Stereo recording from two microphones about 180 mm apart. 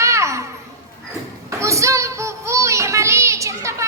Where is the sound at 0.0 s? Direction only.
15° right (ahead or behind).